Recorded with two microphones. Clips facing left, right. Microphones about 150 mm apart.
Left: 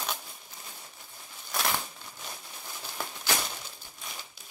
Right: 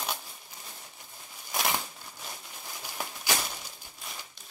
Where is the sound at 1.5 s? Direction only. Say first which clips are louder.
Even; 15° right (ahead or behind).